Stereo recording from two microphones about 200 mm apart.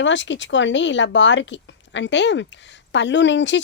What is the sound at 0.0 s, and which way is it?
Speech, 65° left (ahead or behind).